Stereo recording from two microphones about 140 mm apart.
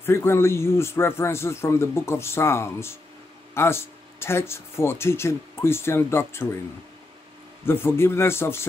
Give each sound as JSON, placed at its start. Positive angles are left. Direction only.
{"t": 0.0, "sound": "a man's voice", "side_deg": 15}
{"t": 7.6, "sound": "speech", "side_deg": 15}